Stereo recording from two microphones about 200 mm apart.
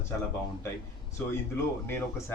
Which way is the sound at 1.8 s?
10° left (ahead or behind).